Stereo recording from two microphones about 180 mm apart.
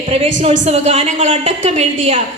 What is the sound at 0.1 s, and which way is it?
A woman's voice, 35° right (ahead or behind).